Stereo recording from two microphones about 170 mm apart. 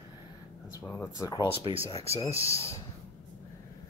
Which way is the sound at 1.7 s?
25° right (ahead or behind).